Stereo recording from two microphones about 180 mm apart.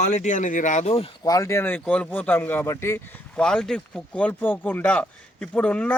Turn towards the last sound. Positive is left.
turn(degrees=5)  # may be behind; listen again after turning